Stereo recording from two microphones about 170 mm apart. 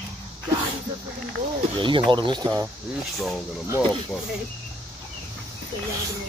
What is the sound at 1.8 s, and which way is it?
Speech, 30° right (ahead or behind).